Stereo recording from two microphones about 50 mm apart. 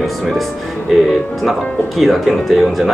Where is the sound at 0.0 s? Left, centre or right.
Centre.